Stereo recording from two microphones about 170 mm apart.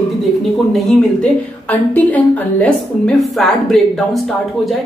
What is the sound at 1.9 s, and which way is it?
A woman's voice, 10° left (ahead or behind).